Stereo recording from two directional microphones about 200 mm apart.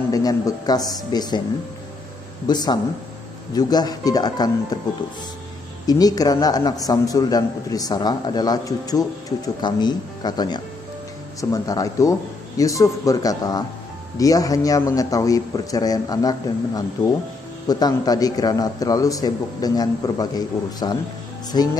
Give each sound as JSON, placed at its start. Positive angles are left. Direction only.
{"t": 0.1, "sound": "a man's voice", "side_deg": 20}
{"t": 2.4, "sound": "a man's voice", "side_deg": 20}
{"t": 5.9, "sound": "a man's voice", "side_deg": 20}